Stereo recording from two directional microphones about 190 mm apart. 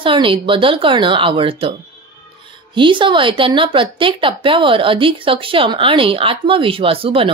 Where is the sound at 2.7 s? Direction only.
25° right (ahead or behind).